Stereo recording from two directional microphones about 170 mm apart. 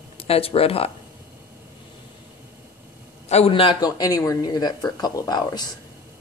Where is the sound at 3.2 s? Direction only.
35° left (ahead or behind).